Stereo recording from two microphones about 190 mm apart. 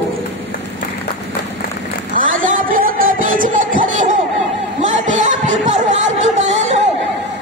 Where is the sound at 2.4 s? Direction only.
45° right (ahead or behind).